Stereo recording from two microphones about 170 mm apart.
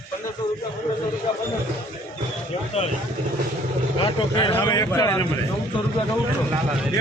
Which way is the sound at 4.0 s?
30° left (ahead or behind).